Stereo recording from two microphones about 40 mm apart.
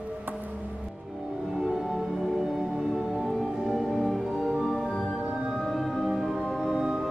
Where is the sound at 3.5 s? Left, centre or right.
Centre.